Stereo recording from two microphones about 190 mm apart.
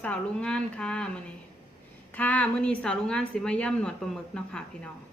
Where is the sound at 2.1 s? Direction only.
10° left (ahead or behind).